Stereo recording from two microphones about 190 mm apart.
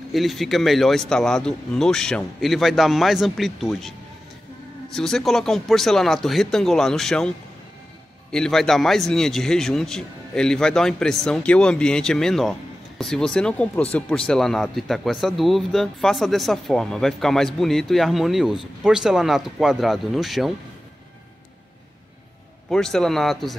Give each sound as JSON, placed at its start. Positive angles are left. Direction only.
{"t": 0.1, "sound": "speech", "side_deg": 0}
{"t": 4.9, "sound": "speech", "side_deg": 0}
{"t": 8.3, "sound": "speech", "side_deg": 5}
{"t": 22.7, "sound": "speech", "side_deg": 0}